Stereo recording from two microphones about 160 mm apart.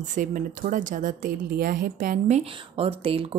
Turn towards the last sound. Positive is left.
turn(degrees=-35)  # may be behind; listen again after turning